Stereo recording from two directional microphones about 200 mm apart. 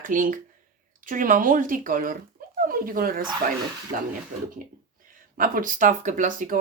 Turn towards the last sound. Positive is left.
turn(degrees=-40)  # may be behind; listen again after turning